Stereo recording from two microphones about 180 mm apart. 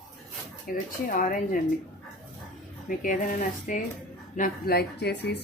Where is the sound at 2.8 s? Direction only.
50° left (ahead or behind).